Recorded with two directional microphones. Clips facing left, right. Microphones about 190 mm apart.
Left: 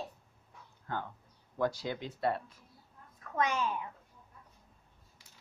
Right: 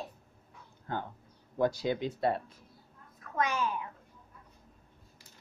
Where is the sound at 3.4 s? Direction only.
25° left (ahead or behind).